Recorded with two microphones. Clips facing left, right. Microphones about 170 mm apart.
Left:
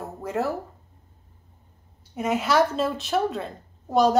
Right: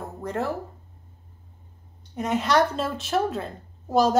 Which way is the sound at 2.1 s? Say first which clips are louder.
Even; 5° left (ahead or behind).